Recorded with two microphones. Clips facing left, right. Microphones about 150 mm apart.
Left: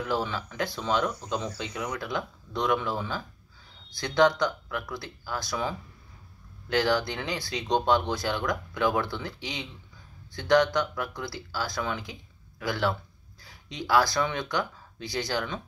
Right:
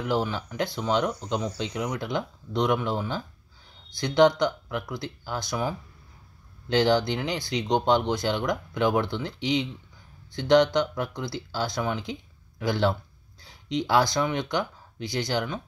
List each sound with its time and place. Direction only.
0.0 s speech: 15° right (ahead or behind)
4.0 s speech: 15° right (ahead or behind)